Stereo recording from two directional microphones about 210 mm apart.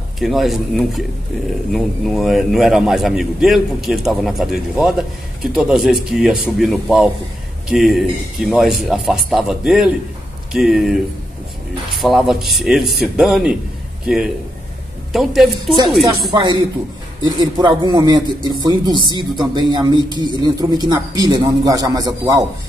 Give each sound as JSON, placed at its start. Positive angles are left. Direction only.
{"t": 0.2, "sound": "a man's voice", "side_deg": 0}
{"t": 12.0, "sound": "a man's voice", "side_deg": 0}
{"t": 16.3, "sound": "a man's voice", "side_deg": -20}